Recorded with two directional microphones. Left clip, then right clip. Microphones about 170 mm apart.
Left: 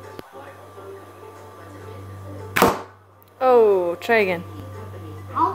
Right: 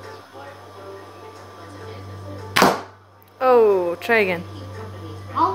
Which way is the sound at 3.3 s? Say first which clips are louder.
Even; 10° left (ahead or behind).